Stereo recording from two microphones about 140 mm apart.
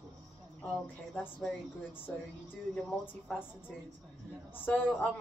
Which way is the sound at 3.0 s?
15° left (ahead or behind).